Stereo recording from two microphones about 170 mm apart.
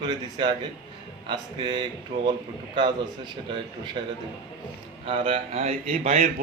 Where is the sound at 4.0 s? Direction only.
25° right (ahead or behind).